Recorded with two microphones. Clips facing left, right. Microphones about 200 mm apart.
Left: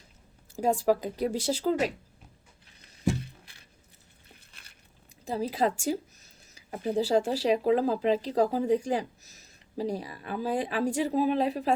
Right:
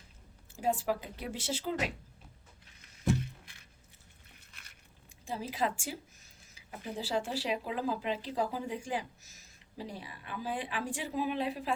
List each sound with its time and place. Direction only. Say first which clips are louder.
0.6 s speech: left 7 dB; 40° left (ahead or behind)
3.2 s a sound: even; 35° left (ahead or behind)
5.2 s speech: left 7 dB; 35° left (ahead or behind)